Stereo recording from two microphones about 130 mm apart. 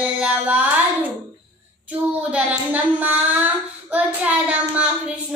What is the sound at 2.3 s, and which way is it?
Child singing, 10° right (ahead or behind).